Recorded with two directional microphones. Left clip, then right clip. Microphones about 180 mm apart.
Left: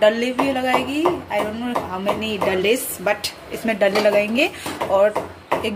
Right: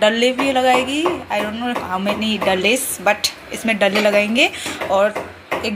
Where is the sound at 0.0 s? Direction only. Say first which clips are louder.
Right 2 dB; centre (ahead or behind).